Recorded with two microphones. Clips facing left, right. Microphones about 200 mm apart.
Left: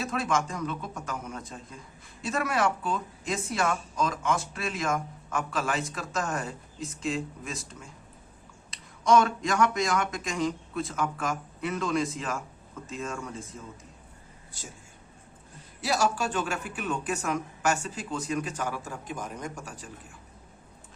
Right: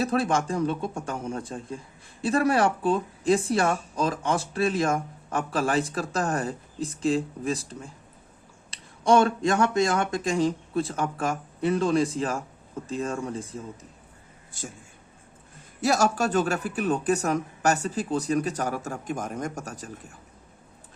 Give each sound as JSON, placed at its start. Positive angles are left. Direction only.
{"t": 0.0, "sound": "speech", "side_deg": -35}
{"t": 14.5, "sound": "speech", "side_deg": -50}
{"t": 15.8, "sound": "speech", "side_deg": -45}